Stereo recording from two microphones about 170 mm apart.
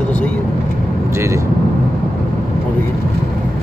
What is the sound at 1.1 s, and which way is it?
Speech, 15° right (ahead or behind).